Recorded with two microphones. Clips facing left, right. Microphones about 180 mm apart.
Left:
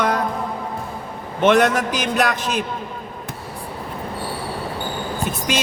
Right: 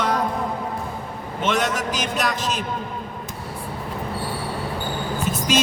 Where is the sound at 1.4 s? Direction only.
55° left (ahead or behind).